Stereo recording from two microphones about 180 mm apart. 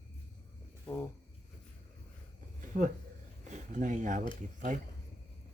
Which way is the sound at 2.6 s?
45° right (ahead or behind).